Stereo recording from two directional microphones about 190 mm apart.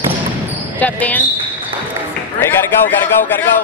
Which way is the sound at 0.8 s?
10° left (ahead or behind).